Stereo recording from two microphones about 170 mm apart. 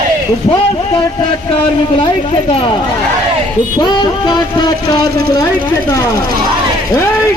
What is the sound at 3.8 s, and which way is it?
Music, 25° left (ahead or behind).